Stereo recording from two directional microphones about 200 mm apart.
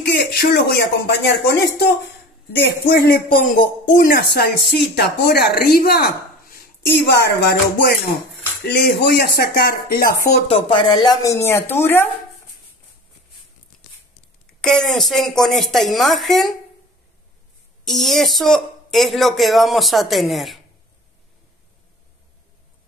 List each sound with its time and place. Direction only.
0.0 s speech: 55° left (ahead or behind)
2.6 s speech: 50° left (ahead or behind)
8.6 s speech: 55° left (ahead or behind)
10.3 s speech: 25° left (ahead or behind); by 12.1 s 10° left (ahead or behind)
14.6 s speech: 5° left (ahead or behind)
17.8 s speech: centre (ahead or behind)